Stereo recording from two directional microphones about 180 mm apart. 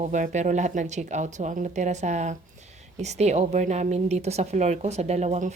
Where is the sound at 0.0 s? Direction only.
45° right (ahead or behind).